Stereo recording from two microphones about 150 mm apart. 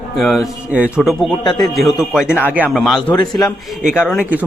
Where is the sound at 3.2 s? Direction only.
25° left (ahead or behind).